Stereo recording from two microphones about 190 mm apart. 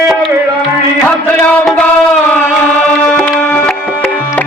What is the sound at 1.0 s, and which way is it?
Music, 5° left (ahead or behind).